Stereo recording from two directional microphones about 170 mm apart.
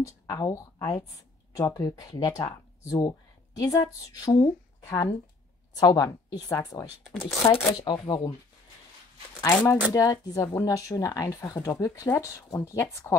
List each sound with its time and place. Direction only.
0.0 s speech: 20° left (ahead or behind)
9.4 s speech: 20° left (ahead or behind)